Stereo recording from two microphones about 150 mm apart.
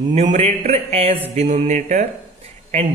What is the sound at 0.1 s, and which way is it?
Speech, 50° right (ahead or behind).